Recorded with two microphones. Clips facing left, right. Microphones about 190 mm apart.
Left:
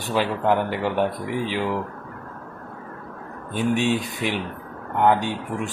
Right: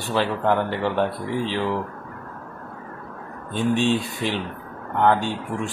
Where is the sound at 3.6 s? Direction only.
10° left (ahead or behind).